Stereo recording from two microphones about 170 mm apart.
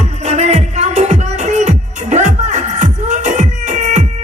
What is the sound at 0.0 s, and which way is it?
Music, 40° right (ahead or behind).